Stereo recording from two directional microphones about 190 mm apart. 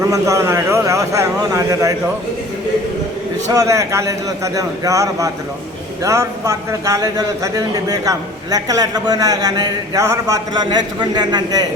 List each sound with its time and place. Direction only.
0.1 s a man's voice: 15° right (ahead or behind)
3.5 s a man's voice: 20° right (ahead or behind)